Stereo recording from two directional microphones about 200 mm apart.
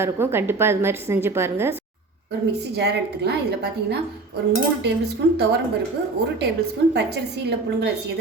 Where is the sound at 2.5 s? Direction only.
55° right (ahead or behind).